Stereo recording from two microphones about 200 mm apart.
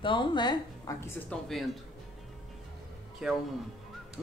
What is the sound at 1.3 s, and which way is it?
Speech, centre (ahead or behind).